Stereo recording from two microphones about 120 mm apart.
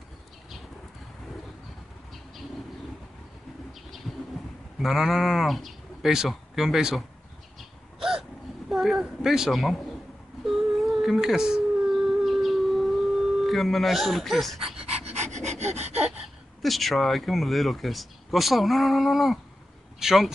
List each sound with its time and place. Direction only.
4.7 s speech: centre (ahead or behind)
8.0 s hiccup: 5° right (ahead or behind)
10.4 s a sound: centre (ahead or behind)
14.9 s pant: 60° right (ahead or behind)
16.6 s speech: centre (ahead or behind)
20.0 s a sound: 5° right (ahead or behind)